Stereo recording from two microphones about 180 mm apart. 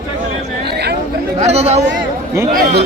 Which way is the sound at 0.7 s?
65° right (ahead or behind).